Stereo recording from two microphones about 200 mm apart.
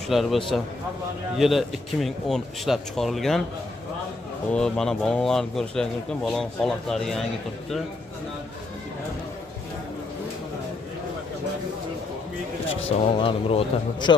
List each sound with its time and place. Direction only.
0.1 s speech: centre (ahead or behind)
1.4 s speech: centre (ahead or behind)
4.5 s speech: 5° left (ahead or behind)
12.8 s a man's voice: 30° left (ahead or behind)